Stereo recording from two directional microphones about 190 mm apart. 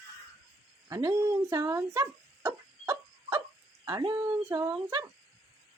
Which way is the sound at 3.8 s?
20° right (ahead or behind).